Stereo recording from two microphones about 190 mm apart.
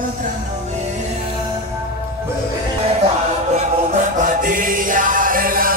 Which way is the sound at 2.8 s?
35° right (ahead or behind).